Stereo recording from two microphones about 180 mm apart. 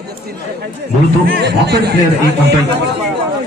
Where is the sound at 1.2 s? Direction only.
65° right (ahead or behind).